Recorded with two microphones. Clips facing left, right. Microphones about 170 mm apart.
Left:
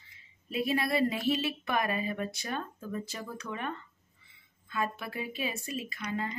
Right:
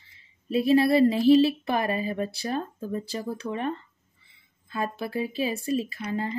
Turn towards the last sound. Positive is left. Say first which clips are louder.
# right 5 dB
turn(degrees=-30)  # may be behind; listen again after turning